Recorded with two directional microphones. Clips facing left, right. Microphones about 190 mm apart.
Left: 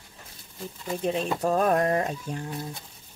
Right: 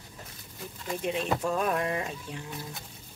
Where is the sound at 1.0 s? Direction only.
35° left (ahead or behind).